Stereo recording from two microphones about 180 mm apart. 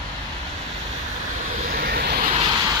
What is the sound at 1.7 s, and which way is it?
Vehicle, 55° right (ahead or behind).